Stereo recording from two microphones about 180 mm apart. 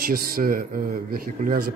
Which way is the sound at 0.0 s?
55° right (ahead or behind).